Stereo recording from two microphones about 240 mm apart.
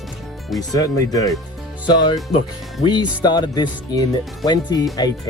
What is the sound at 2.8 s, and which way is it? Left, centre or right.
Speech, centre.